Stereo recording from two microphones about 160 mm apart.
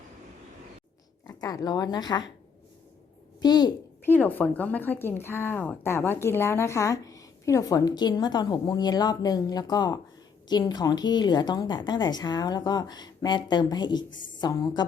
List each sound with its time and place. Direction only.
1.3 s speech: 20° left (ahead or behind)
3.4 s speech: 25° left (ahead or behind)
4.0 s speech: 10° left (ahead or behind)